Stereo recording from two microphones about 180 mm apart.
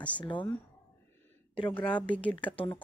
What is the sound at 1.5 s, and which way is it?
Speech, 25° left (ahead or behind).